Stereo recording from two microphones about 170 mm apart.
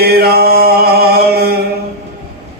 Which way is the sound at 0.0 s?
65° right (ahead or behind).